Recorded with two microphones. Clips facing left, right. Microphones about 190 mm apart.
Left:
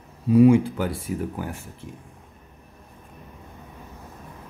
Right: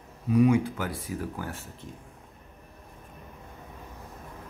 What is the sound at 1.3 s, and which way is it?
Speech, 15° left (ahead or behind).